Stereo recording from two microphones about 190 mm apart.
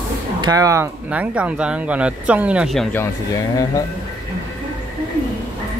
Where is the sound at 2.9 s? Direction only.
20° left (ahead or behind).